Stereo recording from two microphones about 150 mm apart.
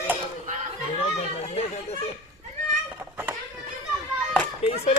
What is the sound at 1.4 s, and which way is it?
Speech, 45° left (ahead or behind).